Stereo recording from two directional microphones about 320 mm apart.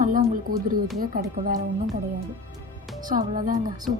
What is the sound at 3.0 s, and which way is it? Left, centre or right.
Speech, right.